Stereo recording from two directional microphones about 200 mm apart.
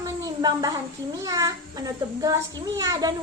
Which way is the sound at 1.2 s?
15° right (ahead or behind).